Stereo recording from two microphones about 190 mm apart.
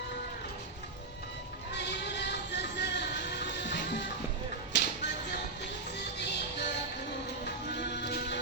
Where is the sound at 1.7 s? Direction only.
65° left (ahead or behind).